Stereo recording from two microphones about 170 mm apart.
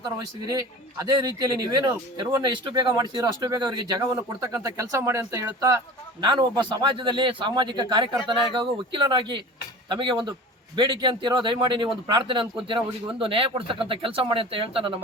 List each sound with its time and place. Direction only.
0.0 s a man's voice: 20° right (ahead or behind)